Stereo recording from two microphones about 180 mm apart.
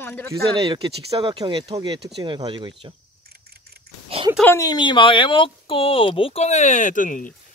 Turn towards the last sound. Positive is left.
turn(degrees=45)  # may be behind; listen again after turning